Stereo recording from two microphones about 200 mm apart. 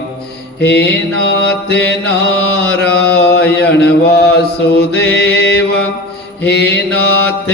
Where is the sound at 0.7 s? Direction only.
55° left (ahead or behind).